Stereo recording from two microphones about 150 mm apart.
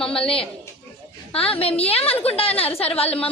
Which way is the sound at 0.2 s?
40° left (ahead or behind).